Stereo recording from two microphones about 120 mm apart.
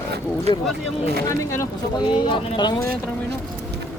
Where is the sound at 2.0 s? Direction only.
40° left (ahead or behind).